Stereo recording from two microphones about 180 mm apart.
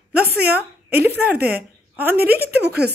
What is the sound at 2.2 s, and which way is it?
Speech, 60° right (ahead or behind).